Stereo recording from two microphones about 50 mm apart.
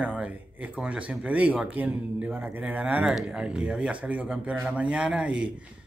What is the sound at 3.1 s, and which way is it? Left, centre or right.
Speech, centre.